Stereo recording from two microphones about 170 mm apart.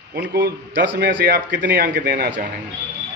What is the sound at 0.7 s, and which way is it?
A man's voice, 85° right.